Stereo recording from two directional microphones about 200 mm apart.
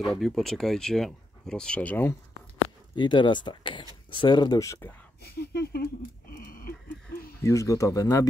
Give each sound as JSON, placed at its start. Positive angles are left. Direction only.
{"t": 0.0, "sound": "speech", "side_deg": 0}
{"t": 3.0, "sound": "speech", "side_deg": 25}
{"t": 5.2, "sound": "speech", "side_deg": 55}
{"t": 6.2, "sound": "a sound", "side_deg": 45}
{"t": 7.4, "sound": "speech", "side_deg": 15}